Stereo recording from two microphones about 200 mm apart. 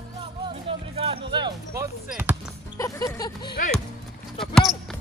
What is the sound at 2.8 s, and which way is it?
Music, 15° left (ahead or behind).